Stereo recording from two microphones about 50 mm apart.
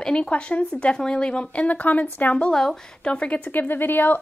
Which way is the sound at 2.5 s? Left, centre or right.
Centre.